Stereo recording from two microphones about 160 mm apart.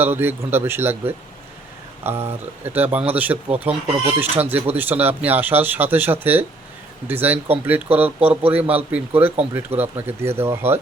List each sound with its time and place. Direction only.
0.0 s speech: 15° right (ahead or behind)